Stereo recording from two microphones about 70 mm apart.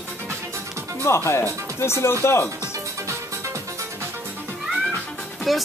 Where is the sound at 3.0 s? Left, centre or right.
Right.